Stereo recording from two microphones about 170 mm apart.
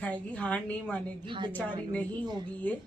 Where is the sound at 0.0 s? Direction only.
10° left (ahead or behind).